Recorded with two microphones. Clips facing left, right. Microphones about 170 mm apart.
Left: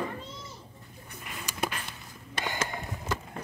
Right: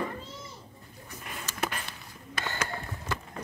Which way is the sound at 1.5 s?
15° left (ahead or behind).